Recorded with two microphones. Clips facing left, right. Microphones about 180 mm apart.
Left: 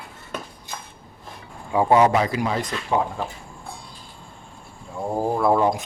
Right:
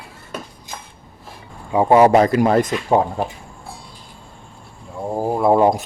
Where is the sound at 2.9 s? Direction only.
40° right (ahead or behind).